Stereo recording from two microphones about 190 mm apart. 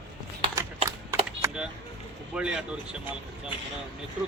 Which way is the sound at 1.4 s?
15° right (ahead or behind).